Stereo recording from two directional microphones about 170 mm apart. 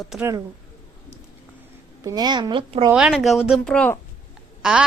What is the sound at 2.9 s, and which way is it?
A woman's voice, 5° right (ahead or behind).